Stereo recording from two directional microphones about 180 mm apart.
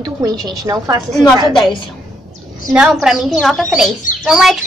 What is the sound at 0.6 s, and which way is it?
Bird, 20° right (ahead or behind).